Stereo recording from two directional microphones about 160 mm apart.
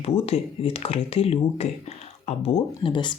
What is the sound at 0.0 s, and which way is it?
Speech, 40° left (ahead or behind).